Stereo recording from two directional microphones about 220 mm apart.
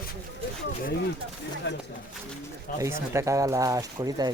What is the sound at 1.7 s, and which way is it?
Speech, 55° left (ahead or behind).